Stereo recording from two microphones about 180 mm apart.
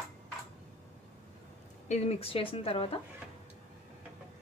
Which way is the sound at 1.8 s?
40° left (ahead or behind).